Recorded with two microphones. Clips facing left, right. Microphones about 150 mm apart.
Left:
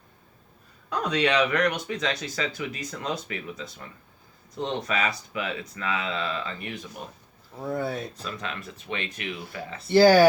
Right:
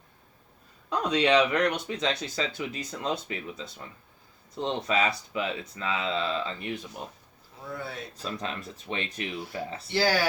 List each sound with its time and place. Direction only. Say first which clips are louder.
0.9 s speech: right 1 dB; 25° right (ahead or behind)
7.6 s speech: left 8 dB; 45° left (ahead or behind)
8.2 s speech: right 1 dB; 35° right (ahead or behind)
9.9 s speech: left 10 dB; 50° left (ahead or behind)